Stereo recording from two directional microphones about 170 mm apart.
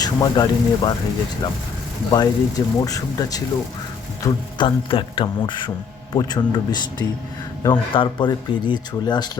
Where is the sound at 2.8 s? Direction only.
20° left (ahead or behind).